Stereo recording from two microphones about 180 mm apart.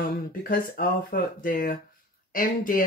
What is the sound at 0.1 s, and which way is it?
Speech, 55° left (ahead or behind).